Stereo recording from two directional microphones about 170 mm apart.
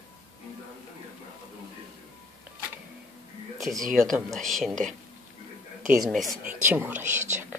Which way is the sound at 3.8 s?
50° right (ahead or behind).